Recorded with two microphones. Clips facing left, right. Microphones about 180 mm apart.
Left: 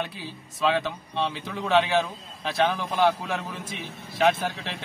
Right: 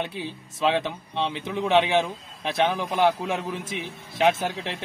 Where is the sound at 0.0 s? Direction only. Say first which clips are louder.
Right 3 dB; 25° right (ahead or behind).